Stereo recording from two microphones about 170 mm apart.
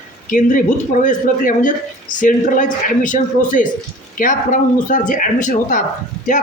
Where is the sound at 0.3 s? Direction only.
50° left (ahead or behind).